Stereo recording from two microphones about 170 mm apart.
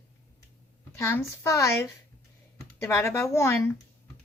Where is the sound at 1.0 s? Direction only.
15° left (ahead or behind).